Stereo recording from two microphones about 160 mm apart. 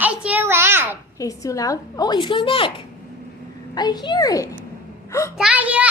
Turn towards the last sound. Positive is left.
turn(degrees=-10)  # may be behind; listen again after turning